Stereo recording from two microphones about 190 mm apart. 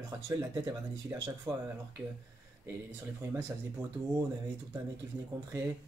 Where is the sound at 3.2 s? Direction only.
15° right (ahead or behind).